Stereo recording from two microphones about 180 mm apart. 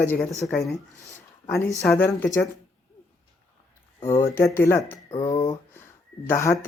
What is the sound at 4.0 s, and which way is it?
Speech, 15° left (ahead or behind).